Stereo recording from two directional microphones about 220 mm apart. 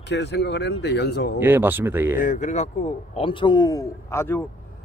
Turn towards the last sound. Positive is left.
turn(degrees=10)  # may be behind; listen again after turning